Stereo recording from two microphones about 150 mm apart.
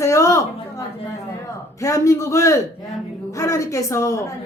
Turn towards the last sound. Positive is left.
turn(degrees=20)  # may be behind; listen again after turning